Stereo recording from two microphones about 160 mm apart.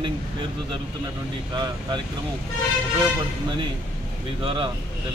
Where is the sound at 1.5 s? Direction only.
30° right (ahead or behind).